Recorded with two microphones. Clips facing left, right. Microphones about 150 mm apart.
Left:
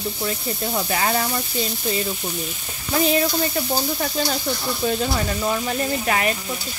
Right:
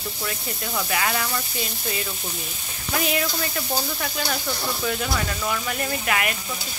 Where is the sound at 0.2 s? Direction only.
30° left (ahead or behind).